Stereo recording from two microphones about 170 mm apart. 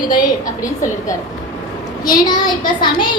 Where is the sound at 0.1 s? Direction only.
20° left (ahead or behind).